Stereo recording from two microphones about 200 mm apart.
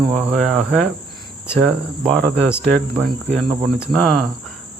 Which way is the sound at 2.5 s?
10° left (ahead or behind).